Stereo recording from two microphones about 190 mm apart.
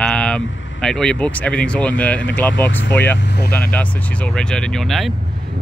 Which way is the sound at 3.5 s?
10° left (ahead or behind).